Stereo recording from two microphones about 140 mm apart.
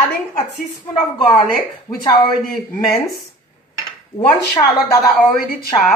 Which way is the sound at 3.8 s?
25° left (ahead or behind).